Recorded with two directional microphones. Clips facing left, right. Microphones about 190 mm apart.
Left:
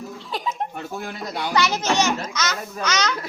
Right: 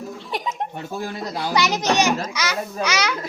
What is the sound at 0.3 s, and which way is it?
Laughter, 20° right (ahead or behind).